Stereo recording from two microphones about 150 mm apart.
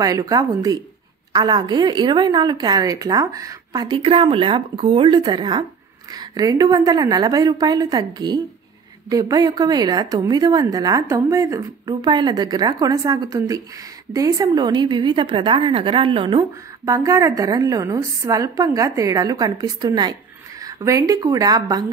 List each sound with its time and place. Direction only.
0.0 s a woman's voice: 25° right (ahead or behind)